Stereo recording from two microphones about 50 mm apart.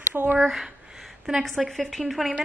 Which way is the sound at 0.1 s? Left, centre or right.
Right.